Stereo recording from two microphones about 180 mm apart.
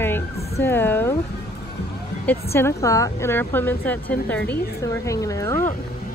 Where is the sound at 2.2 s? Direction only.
15° left (ahead or behind).